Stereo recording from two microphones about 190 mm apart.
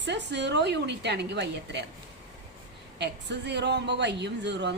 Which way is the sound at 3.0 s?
65° right (ahead or behind).